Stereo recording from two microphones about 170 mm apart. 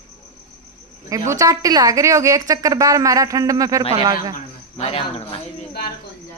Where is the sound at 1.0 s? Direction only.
20° right (ahead or behind).